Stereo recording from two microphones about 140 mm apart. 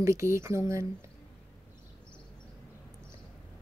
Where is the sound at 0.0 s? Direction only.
20° right (ahead or behind).